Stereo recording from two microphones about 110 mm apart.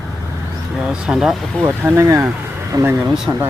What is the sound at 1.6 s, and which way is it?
Speech, 20° right (ahead or behind).